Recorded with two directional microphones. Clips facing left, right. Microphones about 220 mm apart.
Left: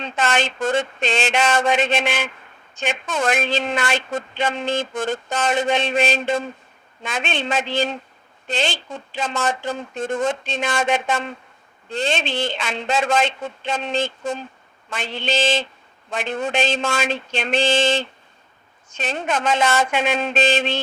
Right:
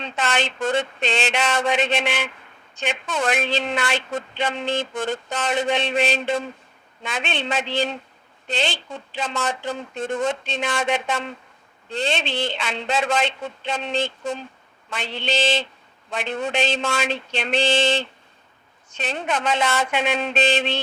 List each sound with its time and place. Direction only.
0.0 s a woman's voice: 45° left (ahead or behind)